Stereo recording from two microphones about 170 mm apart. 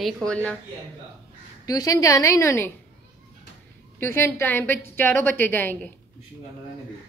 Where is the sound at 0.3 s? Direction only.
10° left (ahead or behind).